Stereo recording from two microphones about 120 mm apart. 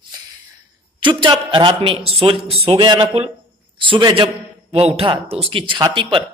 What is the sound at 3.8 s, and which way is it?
Speech, 40° right (ahead or behind).